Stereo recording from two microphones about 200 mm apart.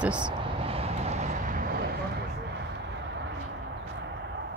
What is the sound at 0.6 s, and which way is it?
Vehicle, 30° right (ahead or behind).